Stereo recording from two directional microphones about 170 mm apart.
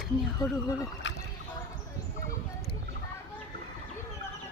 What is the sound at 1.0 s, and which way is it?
Speech, 90° left.